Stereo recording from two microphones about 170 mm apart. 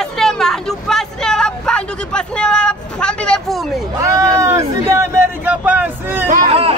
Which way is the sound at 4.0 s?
20° right (ahead or behind).